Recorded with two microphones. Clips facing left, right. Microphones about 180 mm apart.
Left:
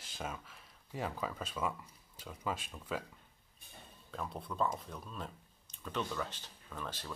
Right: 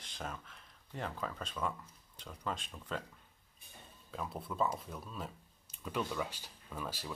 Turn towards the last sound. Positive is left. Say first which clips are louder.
# right 1 dB
turn(degrees=-10)  # may be behind; listen again after turning